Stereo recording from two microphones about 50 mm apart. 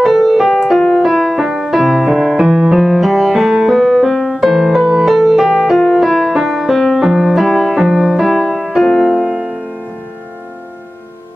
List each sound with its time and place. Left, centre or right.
0.0 s keyboard: centre
0.7 s music: centre
1.0 s music: centre
2.1 s music: centre
4.1 s piano: centre
4.4 s music: centre
9.1 s music: right